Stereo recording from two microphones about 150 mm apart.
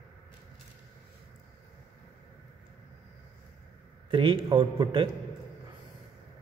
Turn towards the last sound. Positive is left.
turn(degrees=-35)  # may be behind; listen again after turning